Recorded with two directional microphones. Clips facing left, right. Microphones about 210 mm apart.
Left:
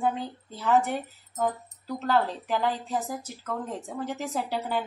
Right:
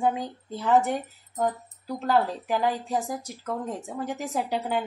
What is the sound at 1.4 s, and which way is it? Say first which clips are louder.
Speech: right 1 dB; 10° right (ahead or behind).